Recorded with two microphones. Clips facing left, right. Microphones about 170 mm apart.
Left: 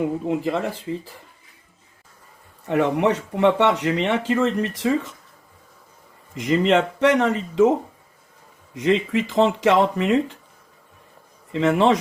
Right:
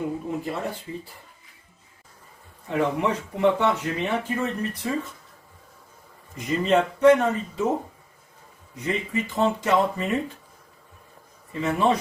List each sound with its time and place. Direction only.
0.3 s speech: 90° left
2.6 s speech: 70° left (ahead or behind); by 4.9 s 90° left
6.3 s speech: 90° left
8.7 s speech: 90° left
11.5 s speech: 90° left